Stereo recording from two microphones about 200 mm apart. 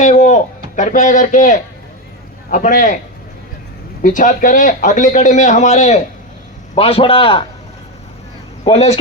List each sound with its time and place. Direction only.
0.0 s a man's voice: 35° left (ahead or behind)
4.0 s a man's voice: 40° left (ahead or behind)
8.6 s a man's voice: 30° left (ahead or behind)